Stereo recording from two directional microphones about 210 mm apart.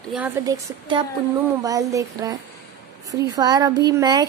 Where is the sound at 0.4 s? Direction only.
20° right (ahead or behind).